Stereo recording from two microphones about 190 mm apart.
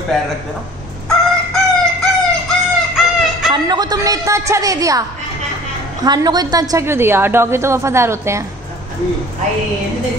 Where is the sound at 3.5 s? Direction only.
20° right (ahead or behind).